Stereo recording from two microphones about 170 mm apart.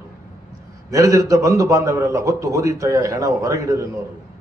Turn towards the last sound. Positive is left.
turn(degrees=-20)  # may be behind; listen again after turning